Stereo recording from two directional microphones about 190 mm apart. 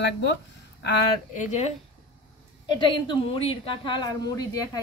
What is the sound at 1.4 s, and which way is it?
Speech, 40° left (ahead or behind).